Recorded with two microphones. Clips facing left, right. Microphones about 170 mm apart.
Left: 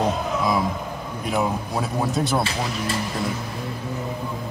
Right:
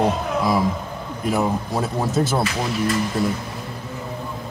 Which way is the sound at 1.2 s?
Centre (ahead or behind).